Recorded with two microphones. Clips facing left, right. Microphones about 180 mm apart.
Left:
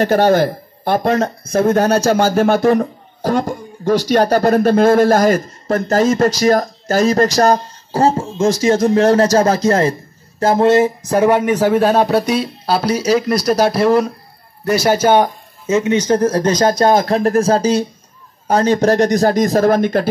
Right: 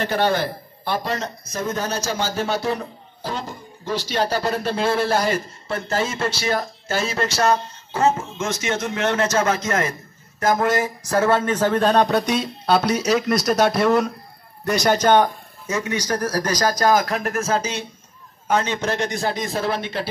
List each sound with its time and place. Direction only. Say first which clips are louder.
0.0 s a man's voice: left 8 dB; 45° left (ahead or behind); by 15.2 s 5° left (ahead or behind)
15.6 s a man's voice: left 10 dB; 20° left (ahead or behind); by 20.1 s 45° left (ahead or behind)